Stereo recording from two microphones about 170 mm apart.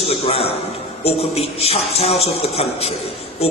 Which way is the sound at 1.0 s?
35° left (ahead or behind).